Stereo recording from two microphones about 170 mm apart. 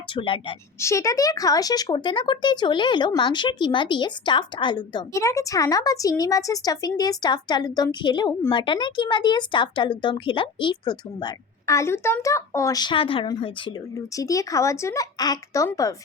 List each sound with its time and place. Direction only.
0.1 s speech: 30° left (ahead or behind)
0.8 s speech: 15° left (ahead or behind)
14.2 s speech: 20° left (ahead or behind)